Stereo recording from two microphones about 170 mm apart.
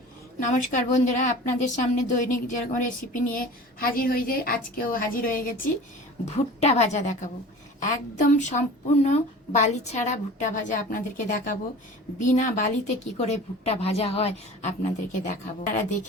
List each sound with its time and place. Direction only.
0.4 s a woman's voice: 45° left (ahead or behind)
6.2 s a woman's voice: 40° left (ahead or behind)